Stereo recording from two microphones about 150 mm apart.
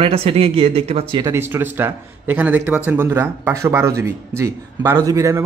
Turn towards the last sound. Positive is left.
turn(degrees=-20)  # may be behind; listen again after turning